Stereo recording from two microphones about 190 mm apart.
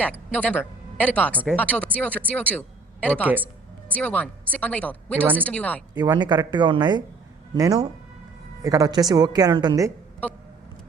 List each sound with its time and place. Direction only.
0.3 s speech: 10° left (ahead or behind)
3.2 s speech: 10° right (ahead or behind)
3.8 s speech: 10° left (ahead or behind)
5.9 s a woman's voice: 20° right (ahead or behind)